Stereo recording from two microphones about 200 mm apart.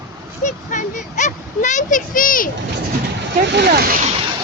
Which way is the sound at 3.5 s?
50° right (ahead or behind).